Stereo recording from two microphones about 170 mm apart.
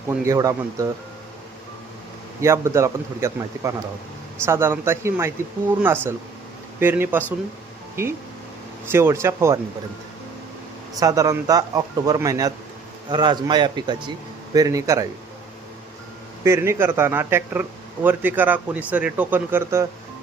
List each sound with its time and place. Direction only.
0.1 s speech: 20° right (ahead or behind)
2.4 s speech: 15° right (ahead or behind)
10.9 s speech: 20° right (ahead or behind)
16.4 s speech: 15° right (ahead or behind)